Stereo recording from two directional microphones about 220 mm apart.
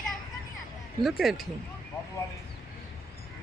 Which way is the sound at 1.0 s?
Centre (ahead or behind).